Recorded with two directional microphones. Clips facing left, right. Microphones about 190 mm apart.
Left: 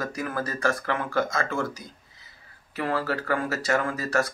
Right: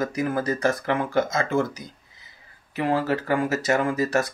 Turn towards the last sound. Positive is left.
turn(degrees=-20)  # may be behind; listen again after turning